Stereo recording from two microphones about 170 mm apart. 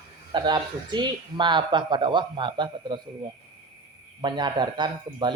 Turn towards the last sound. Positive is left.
turn(degrees=-25)  # may be behind; listen again after turning